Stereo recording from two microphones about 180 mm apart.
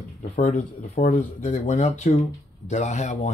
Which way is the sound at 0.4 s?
45° left (ahead or behind).